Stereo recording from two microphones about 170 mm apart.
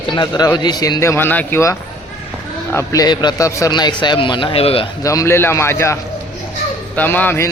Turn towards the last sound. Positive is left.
turn(degrees=10)  # may be behind; listen again after turning